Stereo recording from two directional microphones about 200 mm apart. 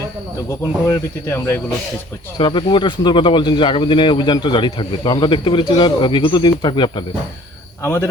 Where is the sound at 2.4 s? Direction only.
25° left (ahead or behind).